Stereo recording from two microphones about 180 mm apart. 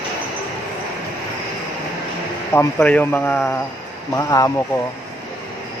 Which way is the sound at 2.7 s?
5° left (ahead or behind).